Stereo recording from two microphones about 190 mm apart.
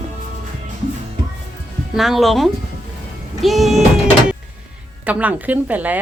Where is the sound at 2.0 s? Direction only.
Centre (ahead or behind).